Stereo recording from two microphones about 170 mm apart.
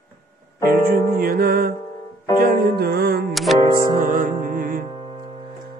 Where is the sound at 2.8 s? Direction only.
60° right (ahead or behind).